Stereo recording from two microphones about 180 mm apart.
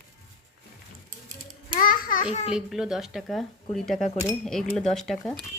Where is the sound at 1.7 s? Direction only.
50° left (ahead or behind).